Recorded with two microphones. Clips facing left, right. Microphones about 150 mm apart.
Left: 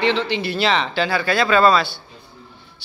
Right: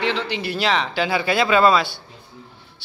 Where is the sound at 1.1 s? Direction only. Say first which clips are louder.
Right 1 dB; 20° right (ahead or behind).